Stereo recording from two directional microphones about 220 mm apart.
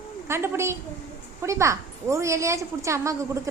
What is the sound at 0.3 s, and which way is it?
A woman's voice, 10° right (ahead or behind).